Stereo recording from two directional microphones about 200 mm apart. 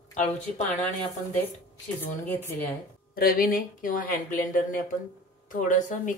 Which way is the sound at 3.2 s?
45° left (ahead or behind).